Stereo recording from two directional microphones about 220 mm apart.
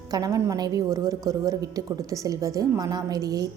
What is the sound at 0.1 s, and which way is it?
A woman's voice, 15° right (ahead or behind).